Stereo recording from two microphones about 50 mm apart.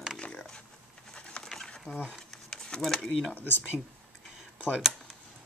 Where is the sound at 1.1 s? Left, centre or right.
Centre.